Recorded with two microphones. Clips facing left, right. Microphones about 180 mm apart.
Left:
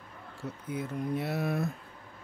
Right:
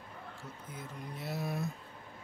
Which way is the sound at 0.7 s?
65° left (ahead or behind).